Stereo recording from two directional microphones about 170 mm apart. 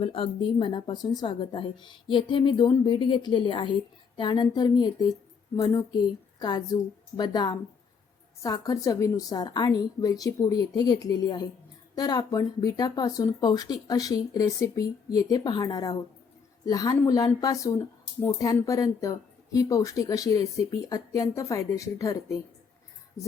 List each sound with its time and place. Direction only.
0.0 s speech: 30° left (ahead or behind)